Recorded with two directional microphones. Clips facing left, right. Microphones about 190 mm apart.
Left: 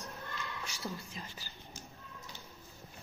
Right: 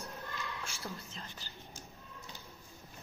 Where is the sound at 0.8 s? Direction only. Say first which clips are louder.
Left 2 dB; 10° left (ahead or behind).